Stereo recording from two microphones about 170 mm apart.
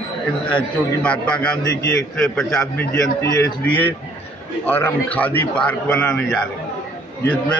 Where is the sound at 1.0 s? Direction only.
5° left (ahead or behind).